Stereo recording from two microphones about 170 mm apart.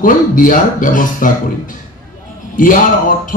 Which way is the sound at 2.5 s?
55° left (ahead or behind).